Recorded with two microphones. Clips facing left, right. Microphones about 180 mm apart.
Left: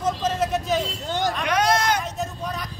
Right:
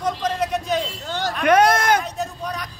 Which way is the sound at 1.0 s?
15° left (ahead or behind).